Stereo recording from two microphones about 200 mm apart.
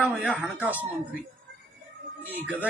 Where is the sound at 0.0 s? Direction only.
Centre (ahead or behind).